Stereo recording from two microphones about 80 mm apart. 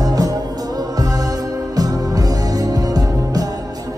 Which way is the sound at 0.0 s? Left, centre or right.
Right.